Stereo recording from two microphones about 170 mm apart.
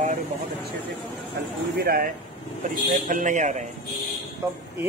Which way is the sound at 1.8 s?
60° right (ahead or behind).